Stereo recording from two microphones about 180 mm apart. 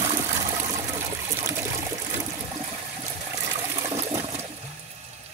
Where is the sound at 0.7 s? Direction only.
15° right (ahead or behind).